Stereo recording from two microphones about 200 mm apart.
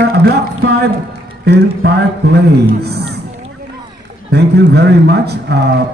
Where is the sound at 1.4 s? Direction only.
55° right (ahead or behind).